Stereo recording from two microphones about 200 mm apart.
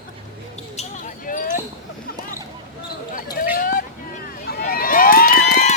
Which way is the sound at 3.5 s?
45° left (ahead or behind).